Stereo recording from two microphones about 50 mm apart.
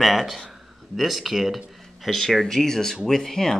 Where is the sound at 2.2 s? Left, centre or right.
Centre.